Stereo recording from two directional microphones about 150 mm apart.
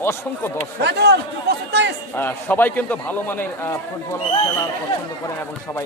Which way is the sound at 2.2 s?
15° left (ahead or behind).